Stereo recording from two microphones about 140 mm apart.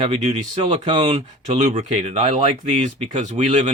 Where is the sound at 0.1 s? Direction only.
55° right (ahead or behind).